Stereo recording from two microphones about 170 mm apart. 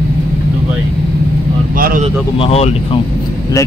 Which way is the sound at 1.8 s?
55° right (ahead or behind).